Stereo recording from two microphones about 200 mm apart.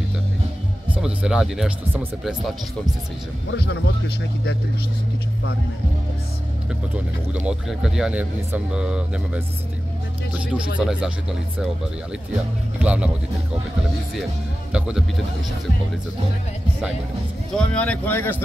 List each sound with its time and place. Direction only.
1.0 s speech: 5° right (ahead or behind)
3.5 s speech: 55° left (ahead or behind)
7.3 s speech: 5° right (ahead or behind)
10.8 s speech: 5° right (ahead or behind)
12.8 s speech: 5° right (ahead or behind)
14.7 s speech: 5° right (ahead or behind)
17.6 s speech: 5° left (ahead or behind)